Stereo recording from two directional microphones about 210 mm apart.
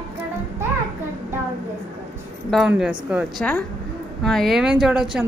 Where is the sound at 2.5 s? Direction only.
Centre (ahead or behind).